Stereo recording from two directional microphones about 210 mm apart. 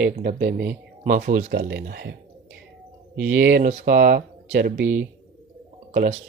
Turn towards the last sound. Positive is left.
turn(degrees=-35)  # may be behind; listen again after turning